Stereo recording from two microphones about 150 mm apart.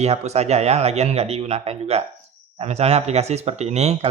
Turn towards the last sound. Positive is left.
turn(degrees=-45)  # may be behind; listen again after turning